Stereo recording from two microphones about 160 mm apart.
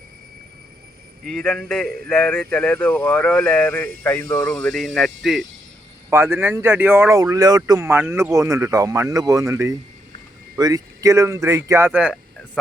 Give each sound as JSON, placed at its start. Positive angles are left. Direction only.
{"t": 1.2, "sound": "a man's voice", "side_deg": 5}
{"t": 6.1, "sound": "speech", "side_deg": -15}